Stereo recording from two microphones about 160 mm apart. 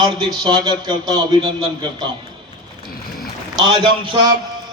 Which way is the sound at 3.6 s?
30° right (ahead or behind).